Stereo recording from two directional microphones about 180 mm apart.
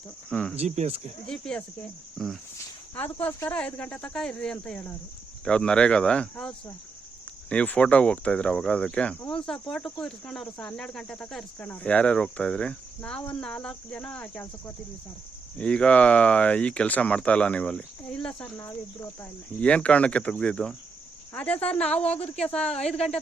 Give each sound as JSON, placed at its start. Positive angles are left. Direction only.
{"t": 0.3, "sound": "speech", "side_deg": 5}
{"t": 0.6, "sound": "speech", "side_deg": -35}
{"t": 1.3, "sound": "speech", "side_deg": 5}
{"t": 7.5, "sound": "speech", "side_deg": 5}
{"t": 15.5, "sound": "speech", "side_deg": 5}
{"t": 21.9, "sound": "speech", "side_deg": 35}
{"t": 22.4, "sound": "speech", "side_deg": 5}